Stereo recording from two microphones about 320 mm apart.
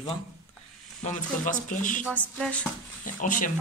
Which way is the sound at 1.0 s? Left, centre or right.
Left.